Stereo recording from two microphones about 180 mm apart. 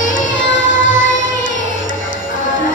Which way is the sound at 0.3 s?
90° left.